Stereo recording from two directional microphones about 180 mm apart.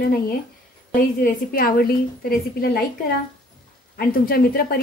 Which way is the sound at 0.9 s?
55° left (ahead or behind).